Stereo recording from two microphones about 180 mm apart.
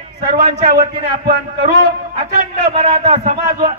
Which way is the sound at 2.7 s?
35° right (ahead or behind).